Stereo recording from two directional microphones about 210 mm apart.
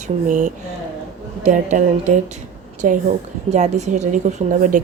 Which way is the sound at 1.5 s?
35° right (ahead or behind).